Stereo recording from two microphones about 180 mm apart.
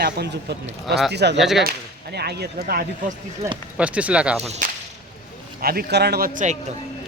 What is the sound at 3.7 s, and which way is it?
Speech, 5° right (ahead or behind).